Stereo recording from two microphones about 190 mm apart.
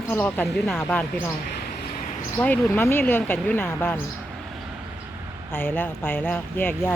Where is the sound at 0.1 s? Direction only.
10° left (ahead or behind).